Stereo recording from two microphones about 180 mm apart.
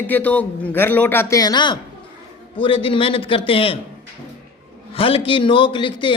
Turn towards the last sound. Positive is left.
turn(degrees=25)  # may be behind; listen again after turning